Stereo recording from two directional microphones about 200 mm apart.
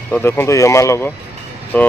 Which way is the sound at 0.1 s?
10° left (ahead or behind).